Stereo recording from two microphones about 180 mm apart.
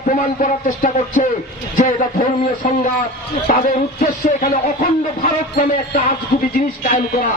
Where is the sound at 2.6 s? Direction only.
45° left (ahead or behind).